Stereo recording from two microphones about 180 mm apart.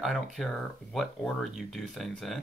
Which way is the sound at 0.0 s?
Centre (ahead or behind).